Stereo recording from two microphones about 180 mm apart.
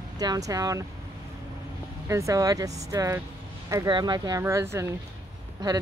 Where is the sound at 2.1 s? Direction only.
15° right (ahead or behind).